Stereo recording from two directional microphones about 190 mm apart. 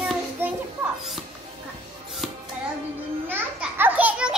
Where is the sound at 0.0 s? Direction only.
5° right (ahead or behind).